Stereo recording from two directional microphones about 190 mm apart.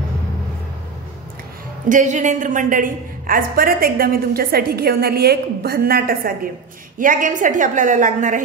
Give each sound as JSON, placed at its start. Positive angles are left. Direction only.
{"t": 1.9, "sound": "a woman's voice", "side_deg": -40}